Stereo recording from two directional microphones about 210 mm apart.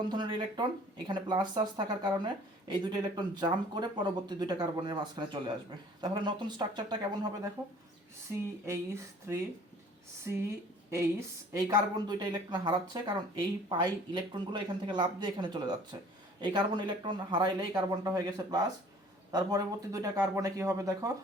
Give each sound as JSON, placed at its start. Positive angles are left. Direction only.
{"t": 0.1, "sound": "speech", "side_deg": -20}
{"t": 11.5, "sound": "speech", "side_deg": -20}